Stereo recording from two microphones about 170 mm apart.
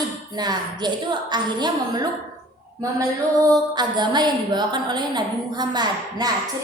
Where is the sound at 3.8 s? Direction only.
25° right (ahead or behind).